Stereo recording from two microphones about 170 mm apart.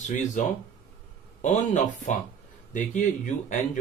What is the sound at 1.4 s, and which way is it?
Speech, 45° left (ahead or behind).